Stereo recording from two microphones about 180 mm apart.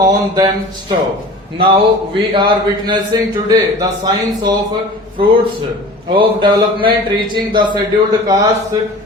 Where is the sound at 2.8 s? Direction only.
25° right (ahead or behind).